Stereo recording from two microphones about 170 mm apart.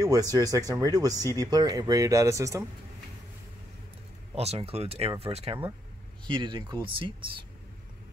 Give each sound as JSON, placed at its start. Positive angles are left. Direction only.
{"t": 0.0, "sound": "speech", "side_deg": -20}
{"t": 4.4, "sound": "speech", "side_deg": -35}